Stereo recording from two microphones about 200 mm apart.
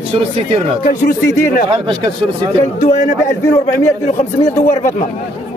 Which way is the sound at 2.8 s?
40° left (ahead or behind).